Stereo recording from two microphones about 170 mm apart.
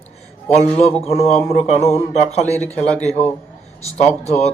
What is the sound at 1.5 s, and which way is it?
Speech, 35° left (ahead or behind).